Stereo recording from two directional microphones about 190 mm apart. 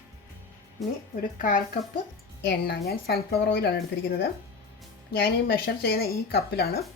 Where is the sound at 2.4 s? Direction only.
55° left (ahead or behind).